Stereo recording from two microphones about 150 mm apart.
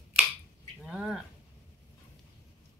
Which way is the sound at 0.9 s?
5° right (ahead or behind).